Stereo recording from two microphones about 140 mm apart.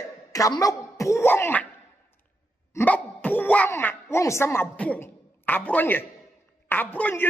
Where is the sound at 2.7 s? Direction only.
10° left (ahead or behind).